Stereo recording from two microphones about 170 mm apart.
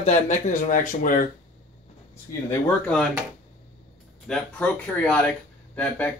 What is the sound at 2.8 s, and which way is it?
Speech, 5° left (ahead or behind).